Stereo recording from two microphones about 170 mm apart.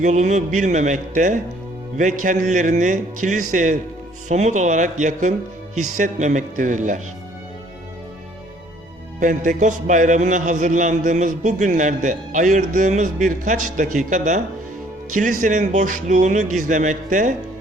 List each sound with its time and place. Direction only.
0.0 s a man's voice: 45° right (ahead or behind)
9.2 s a man's voice: 50° right (ahead or behind)